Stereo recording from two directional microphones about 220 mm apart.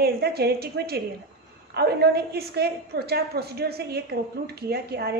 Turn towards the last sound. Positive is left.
turn(degrees=-45)  # may be behind; listen again after turning